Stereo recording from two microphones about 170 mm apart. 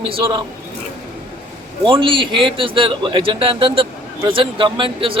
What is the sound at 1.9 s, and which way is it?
Speech, 30° right (ahead or behind).